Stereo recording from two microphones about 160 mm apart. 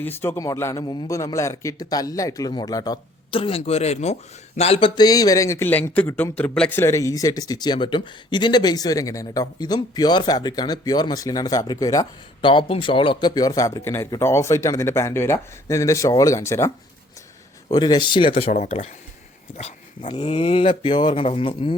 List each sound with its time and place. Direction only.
0.0 s a man's voice: 15° left (ahead or behind); by 4.9 s 40° left (ahead or behind)
4.9 s a man's voice: 25° left (ahead or behind)